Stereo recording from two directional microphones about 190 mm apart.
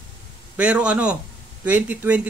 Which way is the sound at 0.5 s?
5° right (ahead or behind).